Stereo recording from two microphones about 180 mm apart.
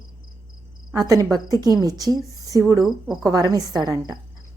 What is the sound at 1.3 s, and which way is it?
Speech, 20° right (ahead or behind).